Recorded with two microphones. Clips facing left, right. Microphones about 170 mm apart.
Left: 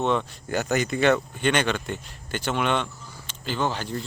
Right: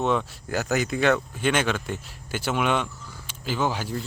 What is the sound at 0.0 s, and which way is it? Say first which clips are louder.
Speech: even; centre (ahead or behind).